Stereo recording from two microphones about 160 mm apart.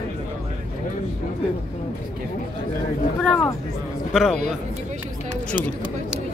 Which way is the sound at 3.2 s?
5° left (ahead or behind).